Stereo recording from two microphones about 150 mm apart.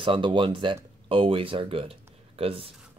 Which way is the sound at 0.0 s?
35° right (ahead or behind).